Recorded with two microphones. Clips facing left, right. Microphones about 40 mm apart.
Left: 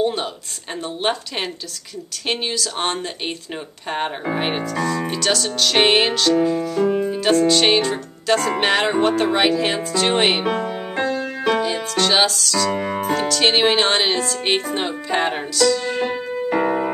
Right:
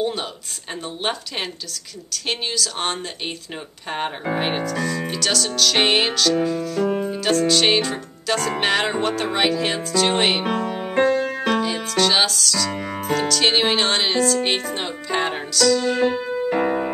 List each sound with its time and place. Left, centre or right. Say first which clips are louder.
0.0 s a sound: left 3 dB; centre
0.8 s speech: left 4 dB; centre
2.2 s music: left 2 dB; centre